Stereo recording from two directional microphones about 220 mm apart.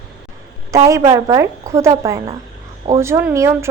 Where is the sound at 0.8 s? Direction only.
15° right (ahead or behind).